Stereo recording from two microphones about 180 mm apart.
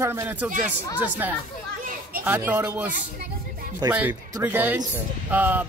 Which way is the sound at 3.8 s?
20° right (ahead or behind).